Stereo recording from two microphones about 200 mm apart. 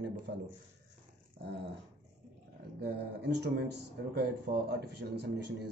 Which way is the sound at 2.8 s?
55° right (ahead or behind).